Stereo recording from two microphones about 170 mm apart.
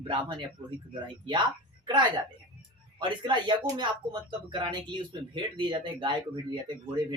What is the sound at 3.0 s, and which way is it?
Speech, 25° right (ahead or behind).